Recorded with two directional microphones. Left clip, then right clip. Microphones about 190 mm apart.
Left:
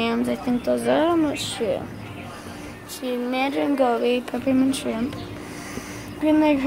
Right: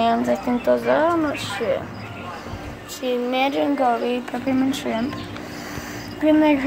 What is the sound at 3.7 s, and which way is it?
Speech, 25° left (ahead or behind).